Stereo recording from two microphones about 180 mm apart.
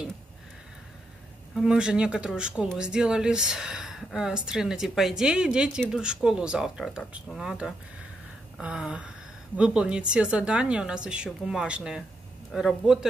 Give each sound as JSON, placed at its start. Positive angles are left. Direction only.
{"t": 1.5, "sound": "speech", "side_deg": 0}